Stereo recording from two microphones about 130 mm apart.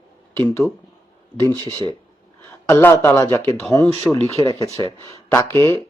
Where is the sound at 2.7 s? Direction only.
25° left (ahead or behind).